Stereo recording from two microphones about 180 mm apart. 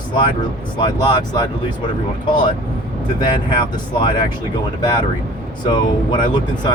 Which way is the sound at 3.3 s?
25° left (ahead or behind).